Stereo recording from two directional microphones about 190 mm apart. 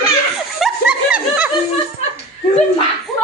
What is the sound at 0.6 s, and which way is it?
Snicker, 5° right (ahead or behind).